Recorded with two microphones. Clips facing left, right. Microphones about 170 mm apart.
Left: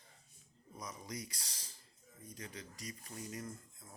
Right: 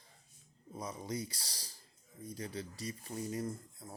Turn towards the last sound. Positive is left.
turn(degrees=-35)  # may be behind; listen again after turning